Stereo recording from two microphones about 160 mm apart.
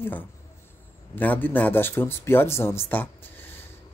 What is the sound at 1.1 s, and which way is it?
Speech, 10° left (ahead or behind).